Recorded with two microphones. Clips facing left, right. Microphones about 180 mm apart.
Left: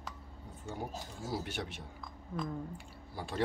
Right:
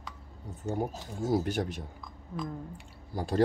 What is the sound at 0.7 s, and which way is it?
Speech, 50° right (ahead or behind).